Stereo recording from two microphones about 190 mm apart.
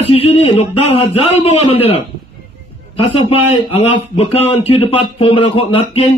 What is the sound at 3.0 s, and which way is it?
A man's voice, 30° left (ahead or behind).